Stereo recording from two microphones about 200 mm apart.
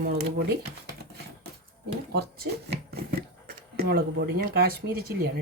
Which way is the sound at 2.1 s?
55° right (ahead or behind).